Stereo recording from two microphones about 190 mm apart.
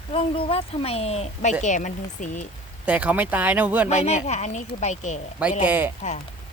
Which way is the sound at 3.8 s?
35° left (ahead or behind).